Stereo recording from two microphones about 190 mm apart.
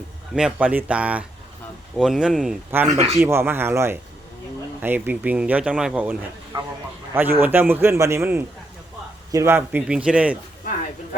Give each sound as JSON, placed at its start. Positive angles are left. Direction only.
{"t": 0.3, "sound": "a man's voice", "side_deg": -5}
{"t": 3.2, "sound": "a man's voice", "side_deg": -15}